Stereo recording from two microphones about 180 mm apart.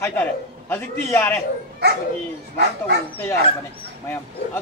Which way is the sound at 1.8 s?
65° right (ahead or behind).